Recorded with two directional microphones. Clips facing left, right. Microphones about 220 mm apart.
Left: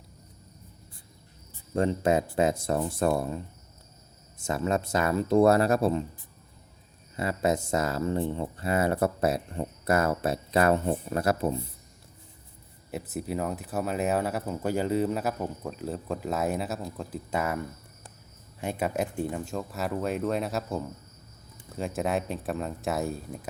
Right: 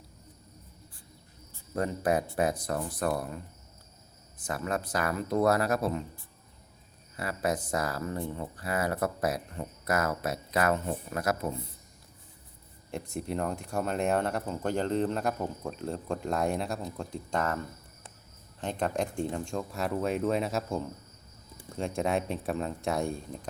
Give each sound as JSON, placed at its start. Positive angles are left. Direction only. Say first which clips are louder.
{"t": 1.7, "sound": "speech", "louder": "left 4 dB", "side_deg": 25}
{"t": 7.2, "sound": "speech", "louder": "left 4 dB", "side_deg": 25}
{"t": 12.9, "sound": "speech", "louder": "left 2 dB", "side_deg": 5}